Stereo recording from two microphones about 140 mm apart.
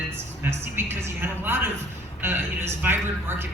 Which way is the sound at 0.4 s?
15° right (ahead or behind).